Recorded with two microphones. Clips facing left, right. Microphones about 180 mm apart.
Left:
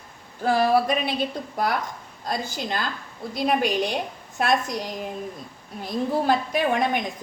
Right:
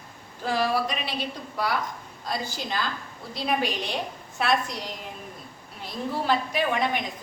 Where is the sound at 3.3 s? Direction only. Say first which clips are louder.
Left 4 dB; 45° left (ahead or behind).